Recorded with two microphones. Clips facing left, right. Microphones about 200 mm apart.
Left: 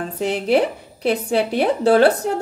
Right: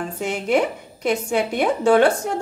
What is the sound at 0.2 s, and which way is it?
Speech, 35° left (ahead or behind).